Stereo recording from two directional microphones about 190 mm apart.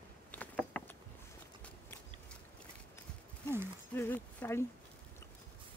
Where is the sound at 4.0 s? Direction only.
10° left (ahead or behind).